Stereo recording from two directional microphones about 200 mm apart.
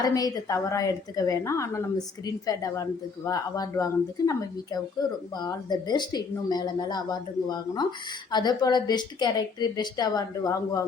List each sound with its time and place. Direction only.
0.0 s a woman's voice: 15° left (ahead or behind)